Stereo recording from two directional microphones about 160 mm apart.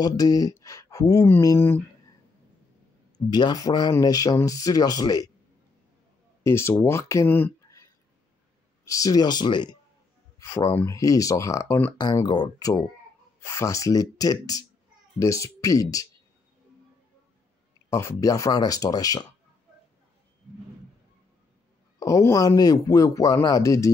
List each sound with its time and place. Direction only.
0.0 s speech: 25° left (ahead or behind)
3.3 s speech: 25° left (ahead or behind)
6.4 s speech: 15° left (ahead or behind)
8.8 s speech: 20° left (ahead or behind)
17.8 s speech: 20° left (ahead or behind)
22.0 s speech: 20° left (ahead or behind)